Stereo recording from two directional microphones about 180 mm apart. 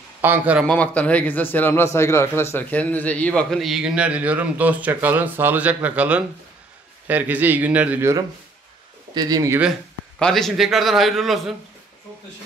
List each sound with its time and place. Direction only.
0.2 s speech: 10° right (ahead or behind)
0.7 s speech: 10° left (ahead or behind); by 9.6 s 20° right (ahead or behind)
9.6 s speech: centre (ahead or behind)